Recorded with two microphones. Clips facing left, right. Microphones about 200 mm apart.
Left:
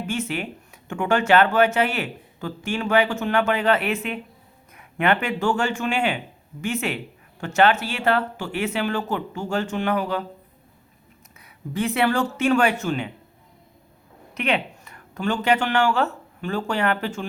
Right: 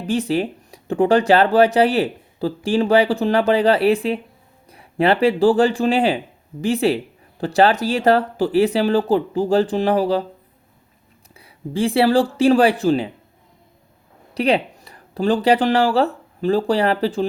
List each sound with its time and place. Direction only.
0.0 s speech: 35° right (ahead or behind)
11.3 s speech: 30° right (ahead or behind)
14.3 s speech: 35° right (ahead or behind)